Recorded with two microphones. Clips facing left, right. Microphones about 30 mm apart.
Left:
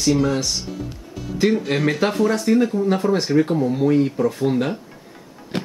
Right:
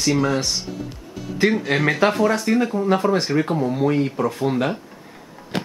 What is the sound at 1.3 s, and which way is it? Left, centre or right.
Speech, centre.